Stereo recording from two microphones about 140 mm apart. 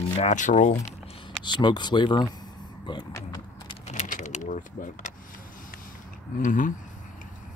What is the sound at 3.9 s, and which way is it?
Vehicle, 60° left (ahead or behind).